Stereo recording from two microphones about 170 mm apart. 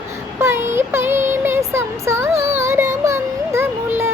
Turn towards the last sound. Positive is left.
turn(degrees=-15)  # may be behind; listen again after turning